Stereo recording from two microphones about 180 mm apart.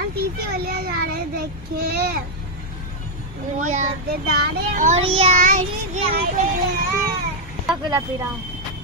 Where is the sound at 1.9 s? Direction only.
60° right (ahead or behind).